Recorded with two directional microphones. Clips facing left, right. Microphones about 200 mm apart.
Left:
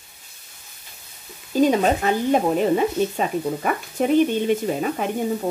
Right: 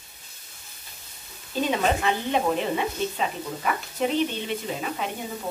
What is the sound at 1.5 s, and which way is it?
Speech, 45° left (ahead or behind).